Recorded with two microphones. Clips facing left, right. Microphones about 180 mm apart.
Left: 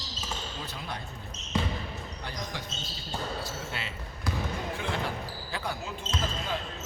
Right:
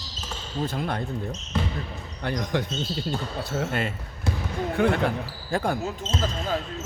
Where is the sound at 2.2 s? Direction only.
60° right (ahead or behind).